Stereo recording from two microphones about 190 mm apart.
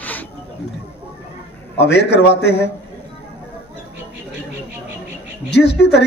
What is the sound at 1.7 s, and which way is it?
Speech, 65° left (ahead or behind).